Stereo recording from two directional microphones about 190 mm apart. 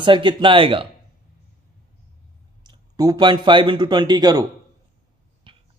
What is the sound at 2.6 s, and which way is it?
Speech, 20° right (ahead or behind).